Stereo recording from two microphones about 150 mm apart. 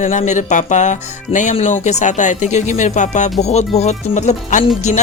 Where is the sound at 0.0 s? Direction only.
55° left (ahead or behind).